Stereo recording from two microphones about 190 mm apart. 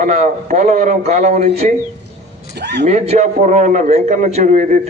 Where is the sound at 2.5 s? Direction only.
60° right (ahead or behind).